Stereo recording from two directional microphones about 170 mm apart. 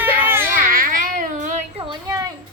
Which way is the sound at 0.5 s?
55° right (ahead or behind).